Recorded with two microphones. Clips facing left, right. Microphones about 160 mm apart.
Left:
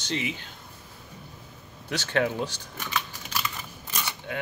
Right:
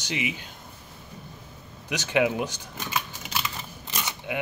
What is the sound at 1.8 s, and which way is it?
Speech, 15° right (ahead or behind).